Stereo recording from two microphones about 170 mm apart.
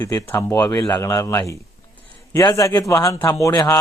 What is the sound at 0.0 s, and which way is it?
A man's voice, 20° left (ahead or behind).